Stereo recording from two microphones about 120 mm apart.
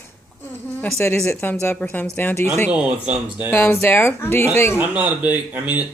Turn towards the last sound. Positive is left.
turn(degrees=-15)  # may be behind; listen again after turning